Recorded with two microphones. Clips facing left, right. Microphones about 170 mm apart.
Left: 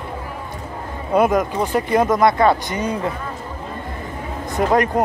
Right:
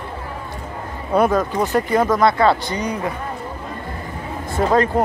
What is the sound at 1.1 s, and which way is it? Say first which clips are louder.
Speech: even; 15° left (ahead or behind).